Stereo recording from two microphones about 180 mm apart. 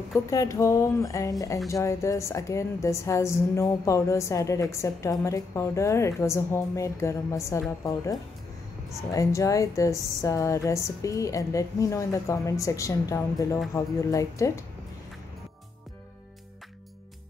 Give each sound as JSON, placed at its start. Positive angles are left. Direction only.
{"t": 0.1, "sound": "a woman's voice", "side_deg": 15}